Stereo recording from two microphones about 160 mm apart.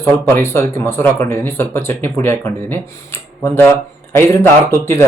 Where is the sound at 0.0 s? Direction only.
15° left (ahead or behind).